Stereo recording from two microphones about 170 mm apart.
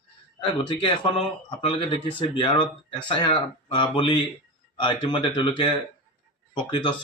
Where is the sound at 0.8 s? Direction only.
30° left (ahead or behind).